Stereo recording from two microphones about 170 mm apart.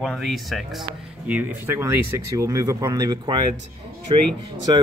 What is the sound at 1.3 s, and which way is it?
Speech, 15° right (ahead or behind).